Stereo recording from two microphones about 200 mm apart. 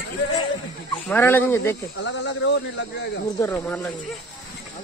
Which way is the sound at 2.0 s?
65° left (ahead or behind).